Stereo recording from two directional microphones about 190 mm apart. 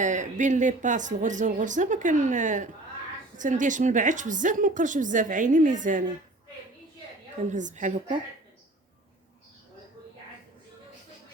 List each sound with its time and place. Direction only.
0.0 s a woman's voice: 40° right (ahead or behind)
7.5 s speech: 40° right (ahead or behind)